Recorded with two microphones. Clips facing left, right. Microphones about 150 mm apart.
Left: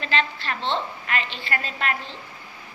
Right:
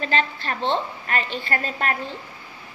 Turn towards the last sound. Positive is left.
turn(degrees=-40)  # may be behind; listen again after turning